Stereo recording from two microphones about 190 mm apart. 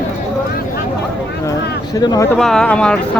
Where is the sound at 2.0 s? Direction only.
20° left (ahead or behind).